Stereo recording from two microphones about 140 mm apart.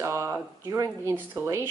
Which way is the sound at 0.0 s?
20° right (ahead or behind).